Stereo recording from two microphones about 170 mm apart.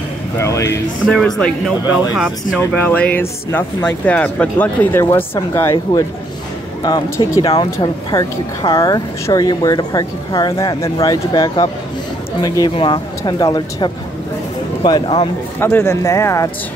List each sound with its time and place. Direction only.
0.4 s speech: 15° left (ahead or behind)
1.0 s speech: 5° left (ahead or behind)
2.7 s speech: 10° left (ahead or behind); by 15.2 s 25° left (ahead or behind)
15.6 s speech: 15° left (ahead or behind)